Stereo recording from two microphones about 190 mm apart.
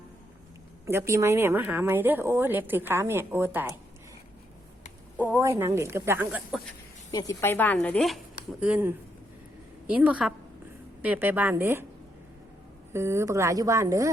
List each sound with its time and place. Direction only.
0.9 s speech: 15° right (ahead or behind)
5.1 s speech: 10° right (ahead or behind)
7.1 s speech: 20° left (ahead or behind); by 8.2 s centre (ahead or behind)
8.6 s speech: 10° right (ahead or behind)
12.9 s speech: 15° right (ahead or behind)